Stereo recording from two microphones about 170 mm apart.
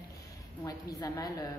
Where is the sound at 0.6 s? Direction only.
20° left (ahead or behind).